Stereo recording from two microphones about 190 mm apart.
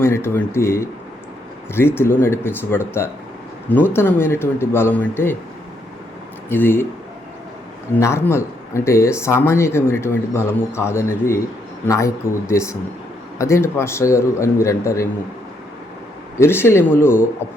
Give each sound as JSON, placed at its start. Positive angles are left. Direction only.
{"t": 0.0, "sound": "speech", "side_deg": 15}
{"t": 6.5, "sound": "speech", "side_deg": 10}
{"t": 7.9, "sound": "speech", "side_deg": 15}
{"t": 16.4, "sound": "speech", "side_deg": 10}